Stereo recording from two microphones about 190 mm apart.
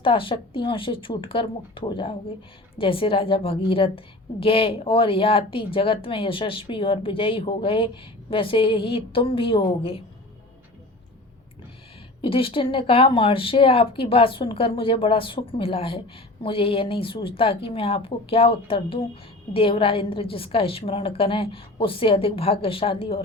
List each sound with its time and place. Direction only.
0.0 s speech: 30° left (ahead or behind)
12.2 s speech: 30° left (ahead or behind)